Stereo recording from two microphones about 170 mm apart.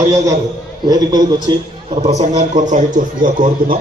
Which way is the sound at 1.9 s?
40° right (ahead or behind).